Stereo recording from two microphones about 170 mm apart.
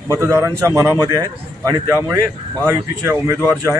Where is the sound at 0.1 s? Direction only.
15° right (ahead or behind).